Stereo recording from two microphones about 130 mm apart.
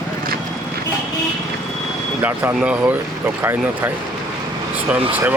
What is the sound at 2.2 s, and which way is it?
Speech, 15° right (ahead or behind).